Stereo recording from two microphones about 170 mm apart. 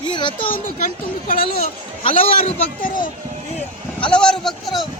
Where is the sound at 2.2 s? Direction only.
40° left (ahead or behind).